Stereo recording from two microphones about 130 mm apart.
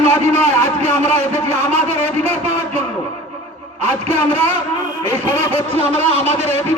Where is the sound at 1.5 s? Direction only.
55° right (ahead or behind).